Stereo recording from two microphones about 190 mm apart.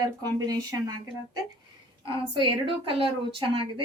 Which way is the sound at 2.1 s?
25° right (ahead or behind).